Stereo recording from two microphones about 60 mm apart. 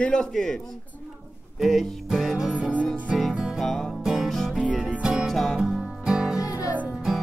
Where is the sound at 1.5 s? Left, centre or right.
Centre.